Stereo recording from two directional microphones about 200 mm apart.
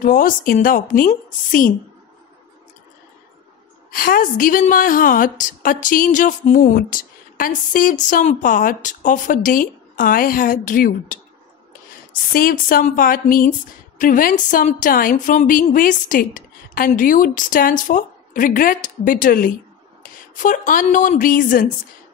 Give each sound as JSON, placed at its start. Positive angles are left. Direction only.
{"t": 0.0, "sound": "a woman's voice", "side_deg": 45}
{"t": 3.9, "sound": "a woman's voice", "side_deg": 45}
{"t": 12.3, "sound": "a woman's voice", "side_deg": 45}